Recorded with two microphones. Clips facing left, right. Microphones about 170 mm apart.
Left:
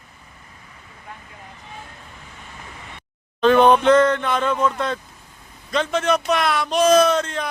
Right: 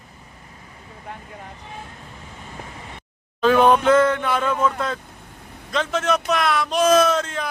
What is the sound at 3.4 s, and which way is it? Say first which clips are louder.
Speech: left 2 dB; 5° right (ahead or behind).